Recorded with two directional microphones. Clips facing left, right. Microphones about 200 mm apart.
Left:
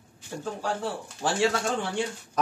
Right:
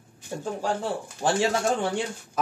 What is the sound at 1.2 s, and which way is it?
Speech, 20° right (ahead or behind).